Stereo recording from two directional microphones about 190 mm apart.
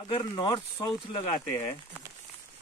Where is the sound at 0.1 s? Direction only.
25° left (ahead or behind).